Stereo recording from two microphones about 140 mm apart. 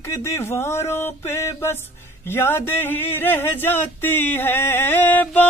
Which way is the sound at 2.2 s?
15° left (ahead or behind).